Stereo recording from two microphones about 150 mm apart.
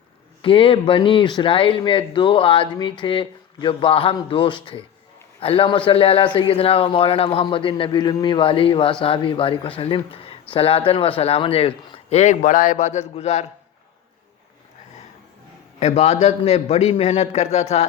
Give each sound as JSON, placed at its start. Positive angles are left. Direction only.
{"t": 0.4, "sound": "a man's voice", "side_deg": 35}
{"t": 15.8, "sound": "a man's voice", "side_deg": 45}